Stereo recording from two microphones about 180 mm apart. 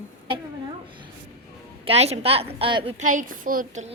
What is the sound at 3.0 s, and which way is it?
Speech, 45° right (ahead or behind).